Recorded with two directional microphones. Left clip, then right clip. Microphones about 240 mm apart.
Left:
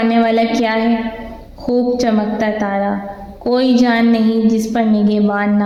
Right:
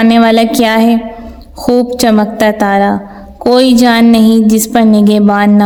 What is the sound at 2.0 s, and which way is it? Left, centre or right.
A woman's voice, right.